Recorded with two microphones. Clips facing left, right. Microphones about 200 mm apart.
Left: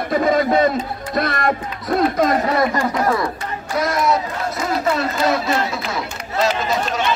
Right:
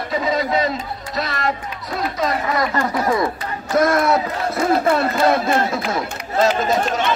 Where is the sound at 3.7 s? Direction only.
50° right (ahead or behind).